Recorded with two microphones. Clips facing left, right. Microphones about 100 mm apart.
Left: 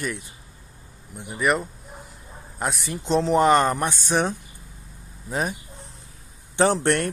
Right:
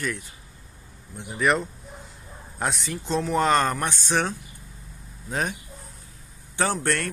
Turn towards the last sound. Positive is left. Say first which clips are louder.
# left 5 dB
turn(degrees=20)  # may be behind; listen again after turning